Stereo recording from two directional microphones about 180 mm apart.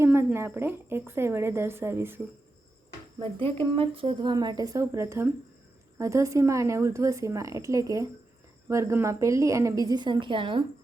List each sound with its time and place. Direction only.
0.0 s speech: 15° right (ahead or behind)
3.2 s speech: 30° right (ahead or behind)